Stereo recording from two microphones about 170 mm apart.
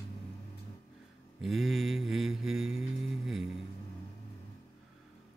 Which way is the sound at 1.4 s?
Centre (ahead or behind).